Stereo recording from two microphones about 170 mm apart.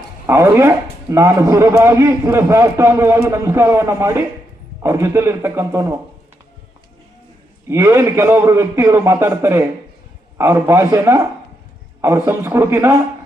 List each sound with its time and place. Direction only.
0.3 s a man's voice: 15° right (ahead or behind)
7.7 s a man's voice: 15° right (ahead or behind)